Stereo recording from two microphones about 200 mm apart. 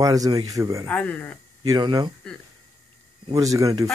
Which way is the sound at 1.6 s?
20° right (ahead or behind).